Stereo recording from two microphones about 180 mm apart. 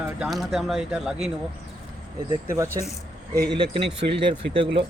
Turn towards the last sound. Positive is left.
turn(degrees=-30)  # may be behind; listen again after turning